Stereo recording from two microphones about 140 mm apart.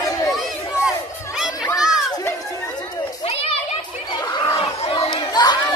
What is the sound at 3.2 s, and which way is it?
Children playing, 45° left (ahead or behind).